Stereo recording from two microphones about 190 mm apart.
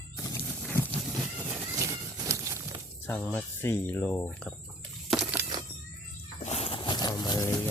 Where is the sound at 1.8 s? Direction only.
15° right (ahead or behind).